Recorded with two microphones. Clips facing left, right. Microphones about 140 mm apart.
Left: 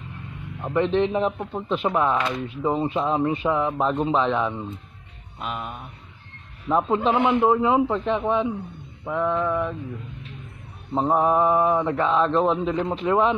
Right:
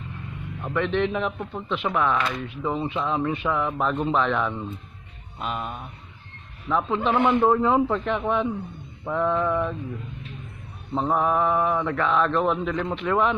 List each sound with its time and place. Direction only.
0.6 s a man's voice: 30° left (ahead or behind)
2.4 s a man's voice: 35° left (ahead or behind); by 4.7 s 15° left (ahead or behind)
5.4 s mantra: centre (ahead or behind)
6.9 s a man's voice: 35° left (ahead or behind)
7.2 s a man's voice: 15° left (ahead or behind)
9.0 s mantra: 5° left (ahead or behind)
11.1 s speech: 30° left (ahead or behind)